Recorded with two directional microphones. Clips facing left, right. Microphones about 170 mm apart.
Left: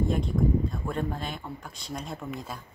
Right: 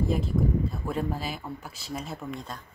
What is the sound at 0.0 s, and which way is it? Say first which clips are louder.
Speech: even; 5° right (ahead or behind).